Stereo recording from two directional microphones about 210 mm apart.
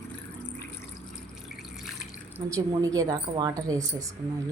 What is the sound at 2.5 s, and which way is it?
Speech, 15° right (ahead or behind).